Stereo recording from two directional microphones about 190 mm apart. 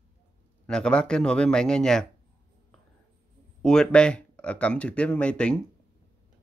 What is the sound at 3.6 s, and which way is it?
Speech, 5° left (ahead or behind).